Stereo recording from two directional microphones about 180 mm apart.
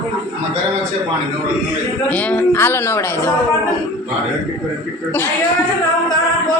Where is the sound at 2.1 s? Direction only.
10° left (ahead or behind).